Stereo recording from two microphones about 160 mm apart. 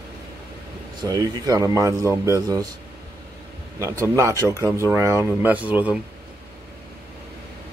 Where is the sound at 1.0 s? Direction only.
25° right (ahead or behind).